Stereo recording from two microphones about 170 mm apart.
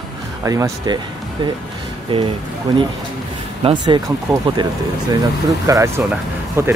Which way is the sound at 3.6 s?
25° right (ahead or behind).